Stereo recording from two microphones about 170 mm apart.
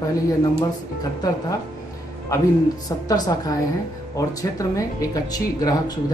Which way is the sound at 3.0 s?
20° left (ahead or behind).